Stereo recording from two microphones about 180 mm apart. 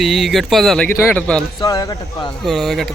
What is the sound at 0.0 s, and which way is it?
A man's voice, centre (ahead or behind).